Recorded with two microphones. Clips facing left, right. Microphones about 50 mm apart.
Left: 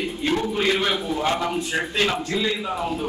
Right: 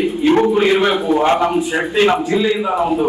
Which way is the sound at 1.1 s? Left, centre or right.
Right.